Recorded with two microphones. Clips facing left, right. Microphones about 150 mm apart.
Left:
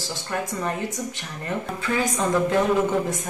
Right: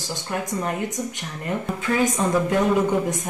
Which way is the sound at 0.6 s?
15° right (ahead or behind).